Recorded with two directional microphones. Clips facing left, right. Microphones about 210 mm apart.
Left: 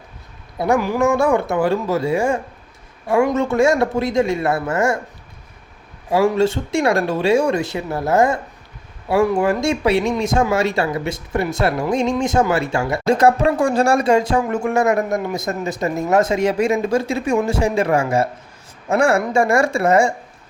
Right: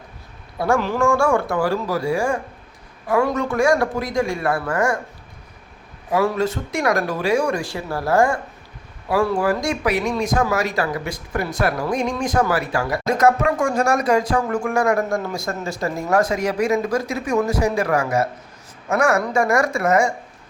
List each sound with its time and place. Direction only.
0.6 s speech: 15° left (ahead or behind)
6.1 s speech: 25° left (ahead or behind)